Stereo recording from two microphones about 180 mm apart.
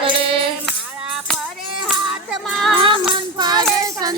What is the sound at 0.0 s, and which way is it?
Music, 30° right (ahead or behind).